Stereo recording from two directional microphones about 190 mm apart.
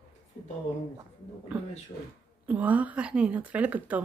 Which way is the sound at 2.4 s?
10° right (ahead or behind).